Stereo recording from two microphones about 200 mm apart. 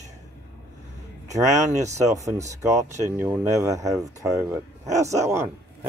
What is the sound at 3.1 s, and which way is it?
Speech, 10° right (ahead or behind).